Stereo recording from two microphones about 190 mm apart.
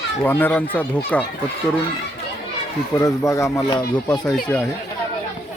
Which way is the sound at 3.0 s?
20° left (ahead or behind).